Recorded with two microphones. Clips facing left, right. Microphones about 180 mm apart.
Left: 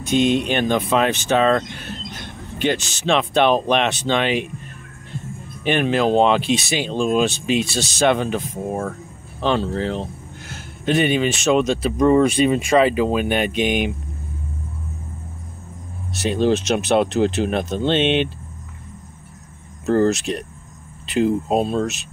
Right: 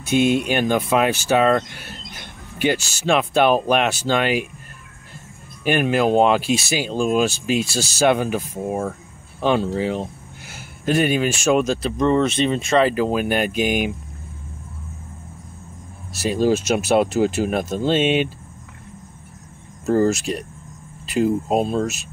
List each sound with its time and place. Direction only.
0.1 s speech: 5° right (ahead or behind)
12.0 s speech: 10° left (ahead or behind)
16.1 s speech: 5° right (ahead or behind)
19.9 s speech: 5° right (ahead or behind)